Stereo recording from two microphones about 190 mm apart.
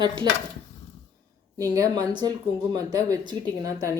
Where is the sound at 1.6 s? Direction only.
20° right (ahead or behind).